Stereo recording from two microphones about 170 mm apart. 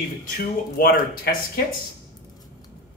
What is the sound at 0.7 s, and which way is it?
Speech, 60° left (ahead or behind).